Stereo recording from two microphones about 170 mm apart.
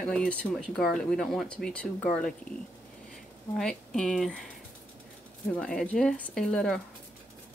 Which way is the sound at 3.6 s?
5° left (ahead or behind).